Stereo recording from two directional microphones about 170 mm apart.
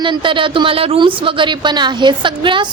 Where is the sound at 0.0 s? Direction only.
30° right (ahead or behind).